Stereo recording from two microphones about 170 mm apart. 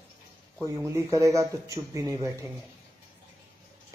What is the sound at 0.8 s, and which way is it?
Speech, 20° right (ahead or behind).